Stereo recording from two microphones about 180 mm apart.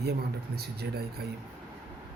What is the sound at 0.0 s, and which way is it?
Speech, 65° right (ahead or behind).